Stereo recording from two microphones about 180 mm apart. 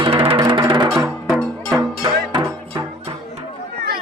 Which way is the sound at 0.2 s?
30° right (ahead or behind).